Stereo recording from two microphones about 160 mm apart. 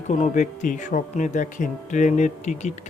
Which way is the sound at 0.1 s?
50° left (ahead or behind).